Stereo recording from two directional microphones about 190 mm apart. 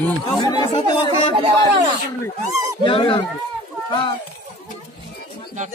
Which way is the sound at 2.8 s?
25° left (ahead or behind).